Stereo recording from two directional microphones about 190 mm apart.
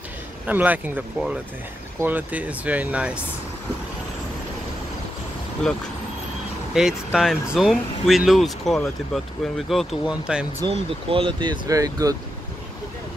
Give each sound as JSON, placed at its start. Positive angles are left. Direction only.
{"t": 0.5, "sound": "speech", "side_deg": -10}
{"t": 6.7, "sound": "speech", "side_deg": 0}
{"t": 10.6, "sound": "speech", "side_deg": -30}